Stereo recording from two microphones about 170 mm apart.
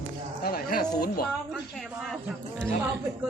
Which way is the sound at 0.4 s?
65° left (ahead or behind).